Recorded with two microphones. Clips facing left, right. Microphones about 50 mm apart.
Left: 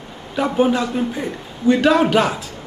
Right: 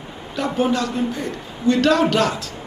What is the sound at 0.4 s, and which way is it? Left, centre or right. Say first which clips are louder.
A man's voice: left 3 dB; centre.